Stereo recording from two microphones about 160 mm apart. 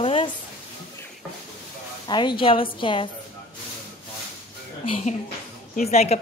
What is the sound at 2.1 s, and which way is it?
A woman's voice, 30° left (ahead or behind).